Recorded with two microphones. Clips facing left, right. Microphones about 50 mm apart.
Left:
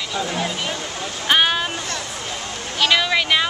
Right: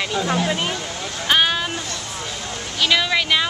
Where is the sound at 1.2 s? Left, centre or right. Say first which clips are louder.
Left 1 dB; centre.